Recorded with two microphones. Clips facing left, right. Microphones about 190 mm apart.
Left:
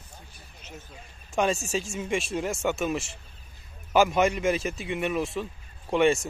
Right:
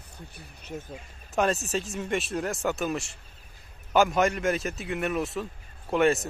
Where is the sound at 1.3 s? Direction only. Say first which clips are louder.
Even; centre (ahead or behind).